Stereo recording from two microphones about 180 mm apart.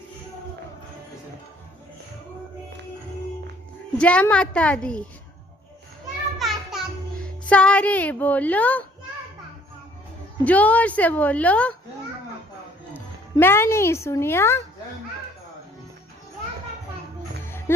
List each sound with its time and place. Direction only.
3.9 s a woman's voice: 5° left (ahead or behind)
6.4 s music: centre (ahead or behind)
10.4 s a woman's voice: 10° left (ahead or behind)
12.9 s speech: 10° left (ahead or behind)